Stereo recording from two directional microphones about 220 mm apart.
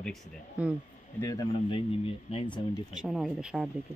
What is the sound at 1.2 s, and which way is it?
Speech, 15° left (ahead or behind).